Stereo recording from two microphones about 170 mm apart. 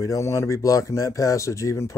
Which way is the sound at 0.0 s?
20° left (ahead or behind).